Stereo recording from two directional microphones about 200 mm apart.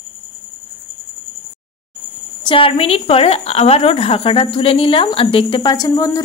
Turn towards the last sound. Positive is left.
turn(degrees=15)  # may be behind; listen again after turning